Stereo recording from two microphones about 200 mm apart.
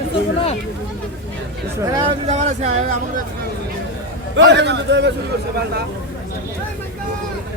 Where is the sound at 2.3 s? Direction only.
35° right (ahead or behind).